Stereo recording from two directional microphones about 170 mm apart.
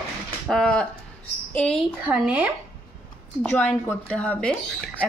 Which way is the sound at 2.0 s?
5° right (ahead or behind).